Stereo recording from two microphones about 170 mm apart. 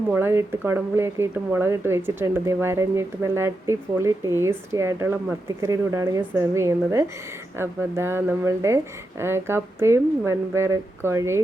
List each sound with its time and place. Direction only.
0.1 s speech: 15° right (ahead or behind)